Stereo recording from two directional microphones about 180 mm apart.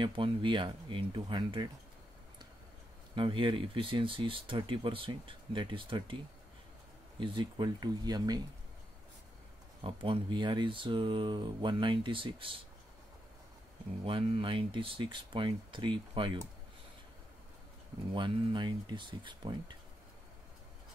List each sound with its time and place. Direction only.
0.0 s speech: 25° right (ahead or behind)
3.2 s speech: 25° right (ahead or behind)
7.2 s speech: 25° right (ahead or behind)
9.8 s speech: 30° right (ahead or behind)
14.0 s speech: 30° right (ahead or behind)
18.1 s speech: 25° right (ahead or behind)